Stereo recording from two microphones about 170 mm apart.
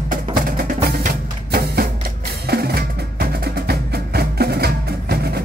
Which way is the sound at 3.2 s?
70° right (ahead or behind).